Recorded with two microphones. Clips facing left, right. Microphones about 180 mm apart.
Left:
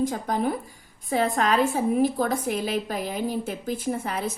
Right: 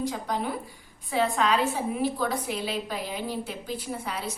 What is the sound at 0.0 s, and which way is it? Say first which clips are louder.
A woman's voice: left 5 dB; 50° left (ahead or behind).